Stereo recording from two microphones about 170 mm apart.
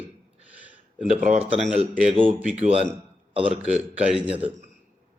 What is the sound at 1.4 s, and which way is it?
Speech, 5° right (ahead or behind).